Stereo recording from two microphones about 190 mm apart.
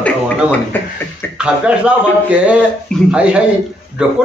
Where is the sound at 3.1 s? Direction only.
5° right (ahead or behind).